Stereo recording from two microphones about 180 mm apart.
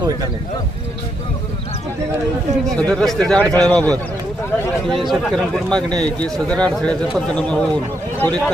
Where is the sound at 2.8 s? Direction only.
5° left (ahead or behind).